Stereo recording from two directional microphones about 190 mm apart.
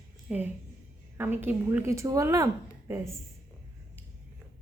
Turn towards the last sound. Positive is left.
turn(degrees=-15)  # may be behind; listen again after turning